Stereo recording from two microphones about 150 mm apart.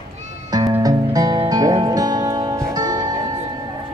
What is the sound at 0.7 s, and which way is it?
Music, 25° right (ahead or behind).